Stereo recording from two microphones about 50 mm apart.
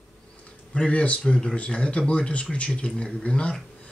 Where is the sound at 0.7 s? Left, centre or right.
Left.